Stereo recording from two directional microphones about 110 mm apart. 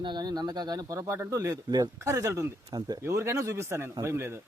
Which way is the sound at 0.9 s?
25° right (ahead or behind).